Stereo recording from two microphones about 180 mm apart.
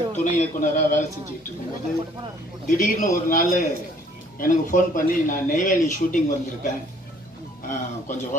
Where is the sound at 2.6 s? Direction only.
50° left (ahead or behind).